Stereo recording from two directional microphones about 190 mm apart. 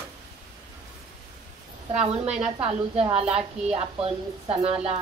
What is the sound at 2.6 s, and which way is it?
Speech, 30° right (ahead or behind).